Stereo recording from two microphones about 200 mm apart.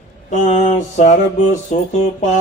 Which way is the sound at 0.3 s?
35° left (ahead or behind).